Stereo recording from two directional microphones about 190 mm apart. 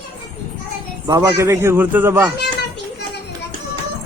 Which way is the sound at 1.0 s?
15° right (ahead or behind).